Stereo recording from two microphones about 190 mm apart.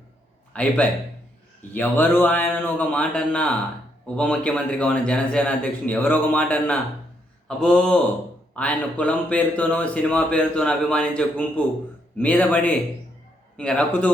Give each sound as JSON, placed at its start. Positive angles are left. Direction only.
{"t": 0.5, "sound": "speech", "side_deg": 5}